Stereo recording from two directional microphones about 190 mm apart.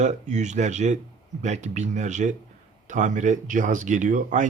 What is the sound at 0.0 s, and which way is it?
Speech, 40° right (ahead or behind).